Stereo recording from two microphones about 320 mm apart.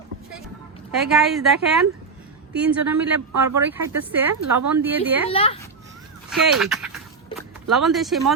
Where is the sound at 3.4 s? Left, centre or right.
Centre.